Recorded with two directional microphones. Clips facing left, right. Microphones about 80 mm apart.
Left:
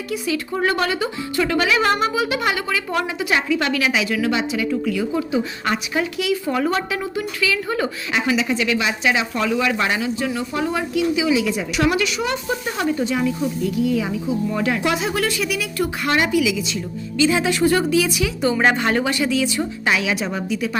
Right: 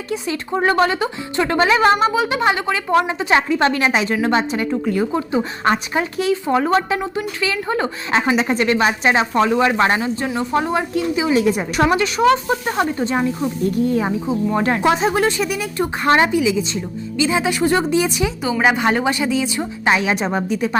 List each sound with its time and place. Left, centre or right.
0.1 s speech: right
6.4 s speech: right
6.7 s a woman's voice: right
17.2 s speech: right
18.4 s speech: centre
18.8 s speech: centre; by 20.7 s right